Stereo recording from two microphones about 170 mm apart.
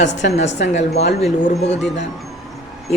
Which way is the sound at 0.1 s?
90° left.